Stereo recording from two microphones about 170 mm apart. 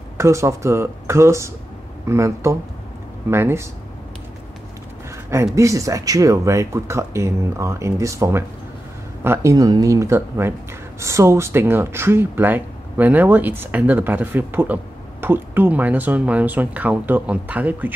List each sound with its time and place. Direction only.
0.2 s speech: 15° right (ahead or behind)
5.3 s speech: 20° right (ahead or behind)